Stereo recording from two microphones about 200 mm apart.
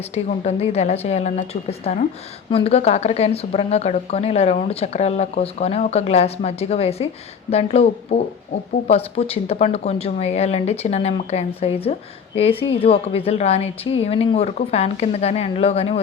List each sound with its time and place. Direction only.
0.1 s a woman's voice: 35° left (ahead or behind)